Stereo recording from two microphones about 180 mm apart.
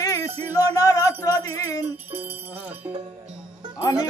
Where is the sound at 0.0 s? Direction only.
20° left (ahead or behind).